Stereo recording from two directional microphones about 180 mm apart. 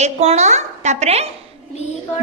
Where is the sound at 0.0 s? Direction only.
35° right (ahead or behind).